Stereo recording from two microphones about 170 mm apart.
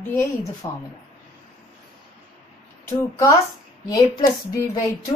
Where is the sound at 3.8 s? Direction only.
20° left (ahead or behind).